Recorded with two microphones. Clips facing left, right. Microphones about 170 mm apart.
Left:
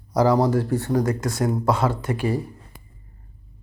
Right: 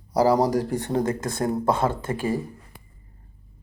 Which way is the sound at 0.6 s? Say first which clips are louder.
Left 2 dB; 15° right (ahead or behind).